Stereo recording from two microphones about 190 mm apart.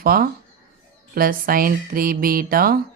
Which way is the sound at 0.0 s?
50° right (ahead or behind).